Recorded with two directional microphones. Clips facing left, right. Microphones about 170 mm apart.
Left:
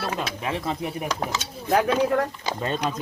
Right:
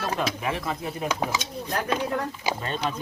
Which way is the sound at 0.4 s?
30° left (ahead or behind).